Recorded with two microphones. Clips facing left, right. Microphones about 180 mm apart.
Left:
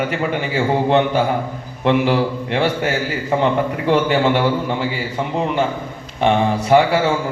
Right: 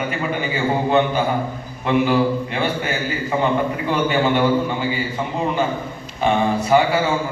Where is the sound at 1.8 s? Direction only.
75° left (ahead or behind).